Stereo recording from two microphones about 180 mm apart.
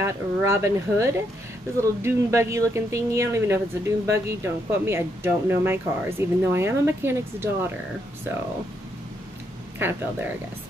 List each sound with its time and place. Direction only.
0.0 s speech: 15° right (ahead or behind)
9.8 s speech: 10° right (ahead or behind)